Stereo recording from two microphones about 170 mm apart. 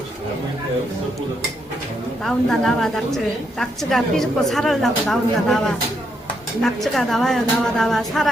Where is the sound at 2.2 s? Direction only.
Centre (ahead or behind).